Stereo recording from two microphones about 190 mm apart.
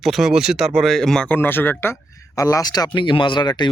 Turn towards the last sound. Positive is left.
turn(degrees=25)  # may be behind; listen again after turning